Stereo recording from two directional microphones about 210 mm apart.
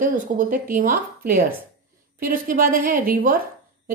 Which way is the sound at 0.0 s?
40° right (ahead or behind).